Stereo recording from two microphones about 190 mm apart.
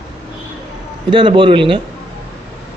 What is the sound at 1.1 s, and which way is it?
Speech, 25° right (ahead or behind).